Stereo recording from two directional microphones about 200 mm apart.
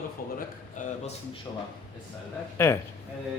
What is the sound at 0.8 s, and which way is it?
Speech, 40° left (ahead or behind).